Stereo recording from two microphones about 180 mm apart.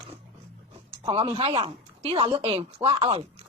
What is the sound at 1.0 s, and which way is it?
Speech, 25° right (ahead or behind).